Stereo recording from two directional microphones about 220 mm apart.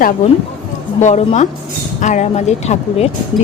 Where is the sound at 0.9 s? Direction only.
30° left (ahead or behind).